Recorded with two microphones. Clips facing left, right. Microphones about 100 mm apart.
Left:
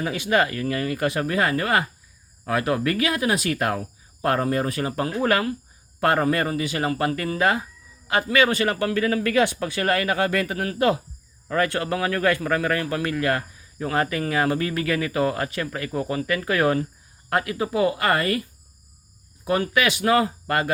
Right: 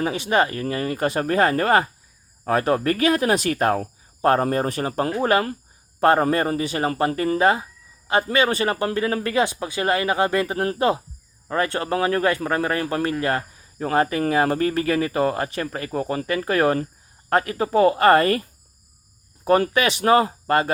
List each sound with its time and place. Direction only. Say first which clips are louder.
0.0 s a man's voice: right 1 dB; 25° right (ahead or behind)
19.5 s speech: right 3 dB; 40° right (ahead or behind)